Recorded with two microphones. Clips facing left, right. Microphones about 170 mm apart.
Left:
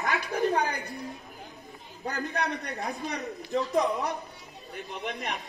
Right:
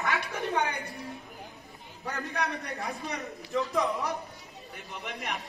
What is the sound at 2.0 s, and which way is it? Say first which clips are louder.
A man's voice: left 2 dB; 30° left (ahead or behind).